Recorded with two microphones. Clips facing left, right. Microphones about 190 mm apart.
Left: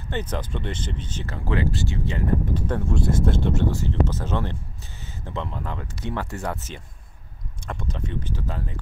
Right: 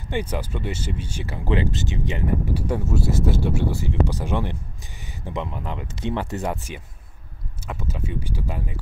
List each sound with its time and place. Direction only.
0.1 s speech: 10° right (ahead or behind)